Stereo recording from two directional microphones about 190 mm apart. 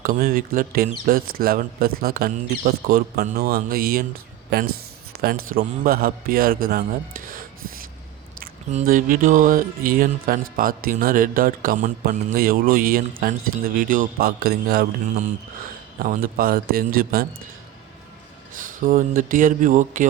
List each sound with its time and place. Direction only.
0.0 s speech: 50° right (ahead or behind)
16.0 s speech: 50° right (ahead or behind)
18.8 s speech: 45° right (ahead or behind)